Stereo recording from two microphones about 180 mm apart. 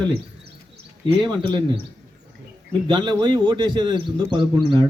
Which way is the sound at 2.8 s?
25° right (ahead or behind).